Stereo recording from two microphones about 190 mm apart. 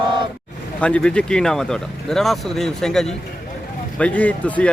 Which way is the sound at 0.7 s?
5° left (ahead or behind).